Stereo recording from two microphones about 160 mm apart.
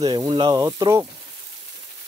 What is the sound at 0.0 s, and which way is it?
Speech, 30° right (ahead or behind).